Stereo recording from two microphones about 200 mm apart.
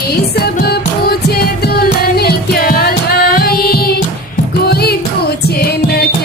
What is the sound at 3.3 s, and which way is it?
Carnatic music, 50° left (ahead or behind).